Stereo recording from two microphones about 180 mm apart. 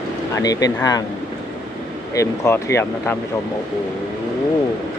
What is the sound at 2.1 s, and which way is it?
Speech, 15° left (ahead or behind).